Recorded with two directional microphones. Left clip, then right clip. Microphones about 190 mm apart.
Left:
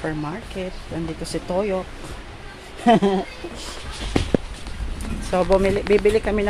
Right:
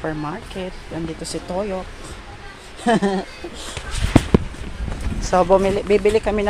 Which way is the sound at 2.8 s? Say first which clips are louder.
Left 2 dB; 20° left (ahead or behind).